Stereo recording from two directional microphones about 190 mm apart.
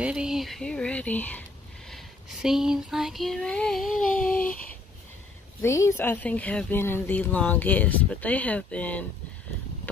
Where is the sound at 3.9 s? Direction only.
45° left (ahead or behind).